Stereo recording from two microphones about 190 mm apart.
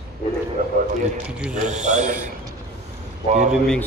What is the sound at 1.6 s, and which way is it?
Speech, 40° right (ahead or behind).